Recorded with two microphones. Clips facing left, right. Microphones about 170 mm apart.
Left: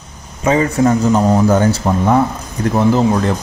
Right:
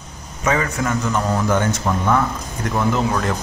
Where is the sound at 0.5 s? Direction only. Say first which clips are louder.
Left 8 dB; 30° left (ahead or behind).